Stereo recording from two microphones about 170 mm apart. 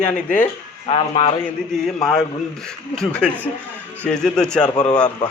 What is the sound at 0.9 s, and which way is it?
Speech, 30° left (ahead or behind).